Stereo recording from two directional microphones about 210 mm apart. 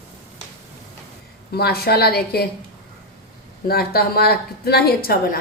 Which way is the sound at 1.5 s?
50° left (ahead or behind).